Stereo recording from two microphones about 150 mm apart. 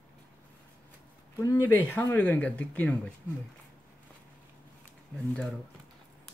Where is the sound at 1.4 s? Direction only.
20° left (ahead or behind).